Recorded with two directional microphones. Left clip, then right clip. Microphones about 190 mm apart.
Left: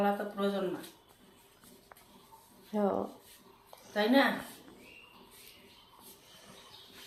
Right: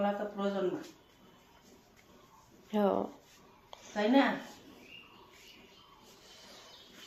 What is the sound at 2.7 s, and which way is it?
Speech, 10° right (ahead or behind).